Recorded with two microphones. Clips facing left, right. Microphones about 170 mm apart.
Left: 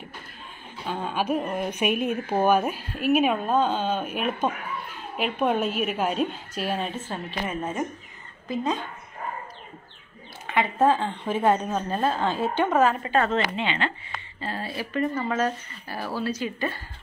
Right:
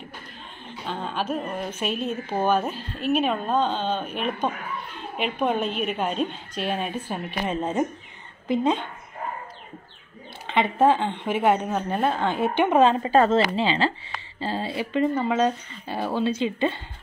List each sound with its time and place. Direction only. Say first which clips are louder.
0.8 s a woman's voice: left 2 dB; 10° left (ahead or behind)
6.8 s a woman's voice: right 2 dB; 15° right (ahead or behind)
10.9 s a woman's voice: right 1 dB; 20° right (ahead or behind)